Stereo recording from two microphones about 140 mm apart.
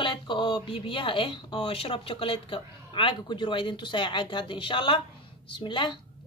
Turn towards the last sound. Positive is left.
turn(degrees=35)  # may be behind; listen again after turning